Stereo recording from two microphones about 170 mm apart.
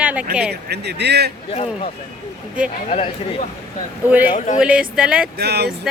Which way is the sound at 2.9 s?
35° left (ahead or behind).